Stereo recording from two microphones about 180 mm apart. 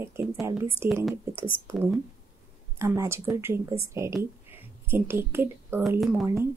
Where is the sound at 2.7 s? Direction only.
15° right (ahead or behind).